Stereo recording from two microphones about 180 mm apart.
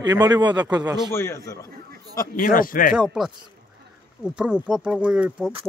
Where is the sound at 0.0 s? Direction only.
25° right (ahead or behind).